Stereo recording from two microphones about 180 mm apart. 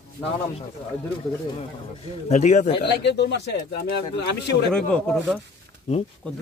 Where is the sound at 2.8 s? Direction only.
75° left (ahead or behind).